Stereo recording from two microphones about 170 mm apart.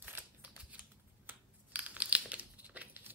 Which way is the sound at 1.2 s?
10° right (ahead or behind).